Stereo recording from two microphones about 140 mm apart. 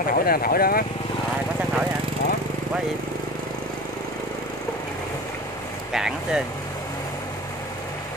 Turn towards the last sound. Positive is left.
turn(degrees=-5)  # may be behind; listen again after turning